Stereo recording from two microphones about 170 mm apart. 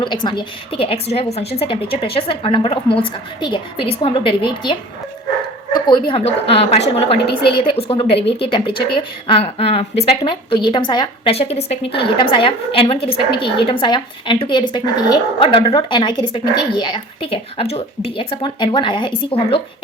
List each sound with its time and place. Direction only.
0.0 s a woman's voice: 30° left (ahead or behind)
5.7 s a sound: 25° left (ahead or behind)
6.1 s a woman's voice: 30° left (ahead or behind)